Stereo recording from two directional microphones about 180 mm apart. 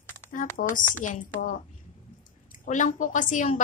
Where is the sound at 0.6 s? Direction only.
45° left (ahead or behind).